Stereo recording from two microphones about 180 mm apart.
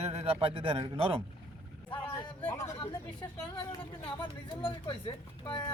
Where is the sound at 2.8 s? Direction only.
25° left (ahead or behind).